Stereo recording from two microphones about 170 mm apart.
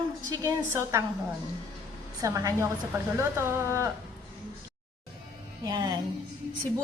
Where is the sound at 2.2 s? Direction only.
20° right (ahead or behind).